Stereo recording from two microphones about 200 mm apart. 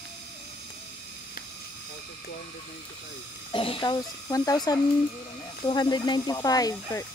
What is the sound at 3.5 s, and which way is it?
Speech, 25° left (ahead or behind).